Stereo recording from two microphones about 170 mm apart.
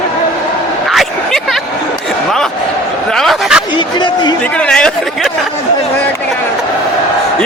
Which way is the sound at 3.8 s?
25° left (ahead or behind).